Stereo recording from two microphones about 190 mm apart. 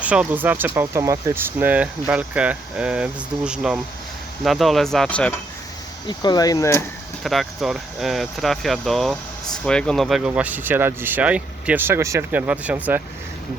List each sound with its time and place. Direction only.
0.0 s speech: 5° right (ahead or behind)
6.1 s speech: 20° left (ahead or behind)
7.3 s speech: centre (ahead or behind)